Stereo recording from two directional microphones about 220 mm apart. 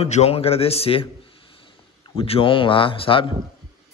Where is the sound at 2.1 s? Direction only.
25° left (ahead or behind).